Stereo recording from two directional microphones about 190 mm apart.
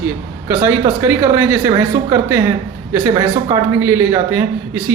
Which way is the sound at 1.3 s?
20° right (ahead or behind).